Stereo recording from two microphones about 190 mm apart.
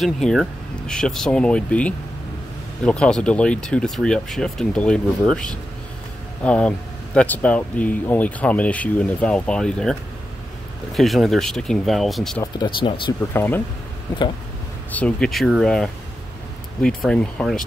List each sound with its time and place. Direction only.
0.0 s speech: centre (ahead or behind)
12.5 s speech: 25° left (ahead or behind)
13.3 s speech: 10° left (ahead or behind)
14.9 s speech: 5° left (ahead or behind)